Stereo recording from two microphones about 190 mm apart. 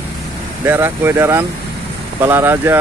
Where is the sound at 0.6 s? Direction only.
10° right (ahead or behind).